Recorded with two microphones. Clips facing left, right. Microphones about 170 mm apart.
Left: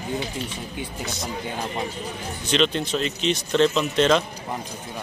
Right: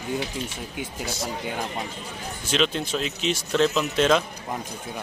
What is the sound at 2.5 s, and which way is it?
Speech, 5° right (ahead or behind).